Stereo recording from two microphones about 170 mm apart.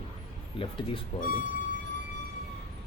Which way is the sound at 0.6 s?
30° left (ahead or behind).